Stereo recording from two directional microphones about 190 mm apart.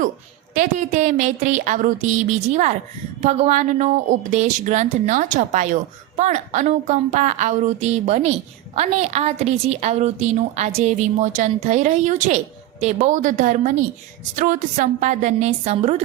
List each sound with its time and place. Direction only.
0.5 s speech: 40° right (ahead or behind)